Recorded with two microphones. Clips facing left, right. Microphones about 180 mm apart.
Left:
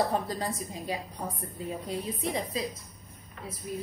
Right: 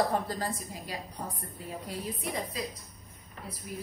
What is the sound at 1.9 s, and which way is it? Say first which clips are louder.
Speech: left 3 dB; 25° left (ahead or behind).